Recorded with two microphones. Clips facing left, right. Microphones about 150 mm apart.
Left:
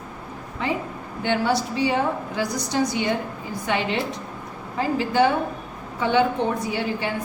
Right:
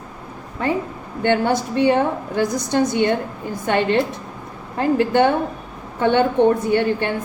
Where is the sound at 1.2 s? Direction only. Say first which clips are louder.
Right 4 dB; 55° right (ahead or behind).